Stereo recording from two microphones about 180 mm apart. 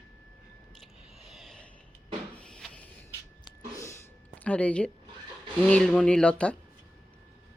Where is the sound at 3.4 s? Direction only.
15° left (ahead or behind).